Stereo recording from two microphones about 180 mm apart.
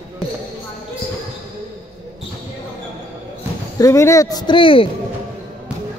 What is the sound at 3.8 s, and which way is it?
A man's voice, 15° left (ahead or behind).